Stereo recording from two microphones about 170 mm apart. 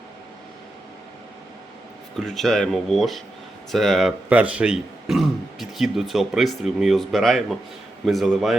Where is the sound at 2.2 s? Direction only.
Centre (ahead or behind).